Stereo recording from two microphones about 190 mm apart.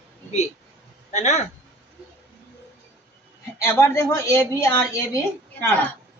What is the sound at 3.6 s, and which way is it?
Speech, 15° left (ahead or behind).